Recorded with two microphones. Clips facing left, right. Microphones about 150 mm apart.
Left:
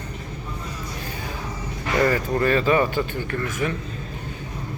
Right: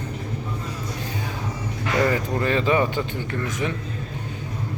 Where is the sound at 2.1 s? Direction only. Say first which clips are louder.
Left 2 dB; 20° right (ahead or behind).